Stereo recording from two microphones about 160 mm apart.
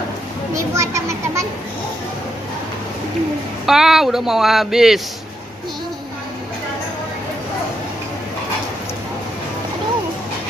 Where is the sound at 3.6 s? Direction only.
5° right (ahead or behind).